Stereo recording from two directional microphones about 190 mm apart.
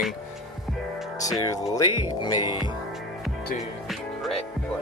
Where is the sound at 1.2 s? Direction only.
20° left (ahead or behind).